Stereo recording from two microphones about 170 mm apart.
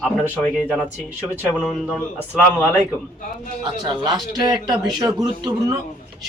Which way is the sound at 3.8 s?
25° right (ahead or behind).